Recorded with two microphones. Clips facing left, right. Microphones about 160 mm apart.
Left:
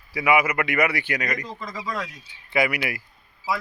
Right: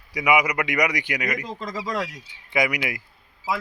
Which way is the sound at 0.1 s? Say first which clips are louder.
Even; 15° right (ahead or behind).